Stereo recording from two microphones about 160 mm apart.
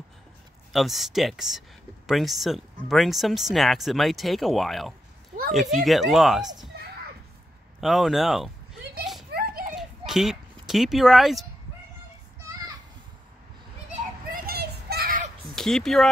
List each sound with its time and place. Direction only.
0.7 s speech: centre (ahead or behind)
7.8 s speech: centre (ahead or behind)
9.3 s children playing: 70° right (ahead or behind)
9.8 s a sound: centre (ahead or behind)
14.3 s children playing: 70° right (ahead or behind)
15.5 s speech: centre (ahead or behind)